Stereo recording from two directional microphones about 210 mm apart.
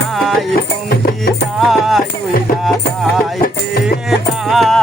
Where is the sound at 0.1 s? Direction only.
Centre (ahead or behind).